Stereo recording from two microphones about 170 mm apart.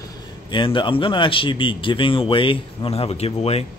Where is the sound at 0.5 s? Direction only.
30° left (ahead or behind).